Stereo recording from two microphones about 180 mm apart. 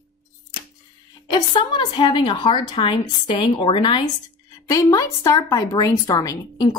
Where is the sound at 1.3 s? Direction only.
25° left (ahead or behind).